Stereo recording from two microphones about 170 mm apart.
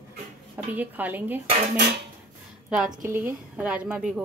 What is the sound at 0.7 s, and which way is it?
Speech, 10° right (ahead or behind).